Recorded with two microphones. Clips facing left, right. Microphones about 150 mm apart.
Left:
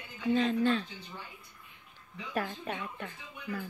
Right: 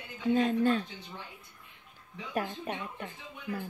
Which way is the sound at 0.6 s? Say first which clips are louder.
Right 1 dB; 45° right (ahead or behind).